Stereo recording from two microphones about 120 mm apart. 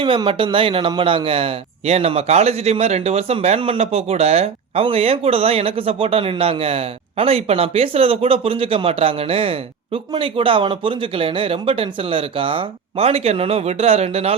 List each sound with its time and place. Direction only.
0.0 s speech: 45° right (ahead or behind)